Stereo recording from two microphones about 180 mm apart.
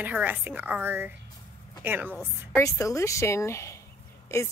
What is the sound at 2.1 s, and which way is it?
A woman's voice, 5° left (ahead or behind).